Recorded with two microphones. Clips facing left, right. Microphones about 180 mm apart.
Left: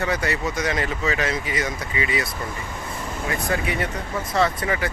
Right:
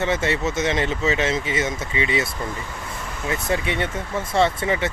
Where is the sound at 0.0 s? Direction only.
25° right (ahead or behind).